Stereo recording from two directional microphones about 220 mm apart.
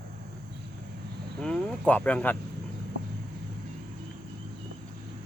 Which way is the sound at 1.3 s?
5° left (ahead or behind).